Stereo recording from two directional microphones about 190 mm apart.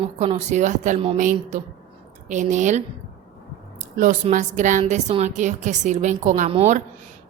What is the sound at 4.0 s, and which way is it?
Speech, 40° right (ahead or behind).